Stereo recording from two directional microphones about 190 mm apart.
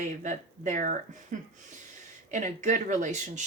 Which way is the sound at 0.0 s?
40° right (ahead or behind).